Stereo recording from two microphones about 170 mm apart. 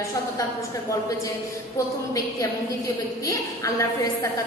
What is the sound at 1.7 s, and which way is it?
A woman's voice, 20° left (ahead or behind).